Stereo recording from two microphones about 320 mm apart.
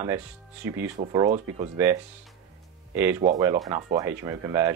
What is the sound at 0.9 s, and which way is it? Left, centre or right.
Speech, centre.